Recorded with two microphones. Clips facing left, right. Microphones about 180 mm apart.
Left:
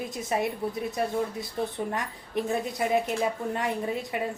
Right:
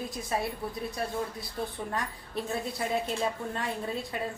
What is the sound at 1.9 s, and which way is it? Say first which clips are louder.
A woman's voice: left 3 dB; 20° left (ahead or behind).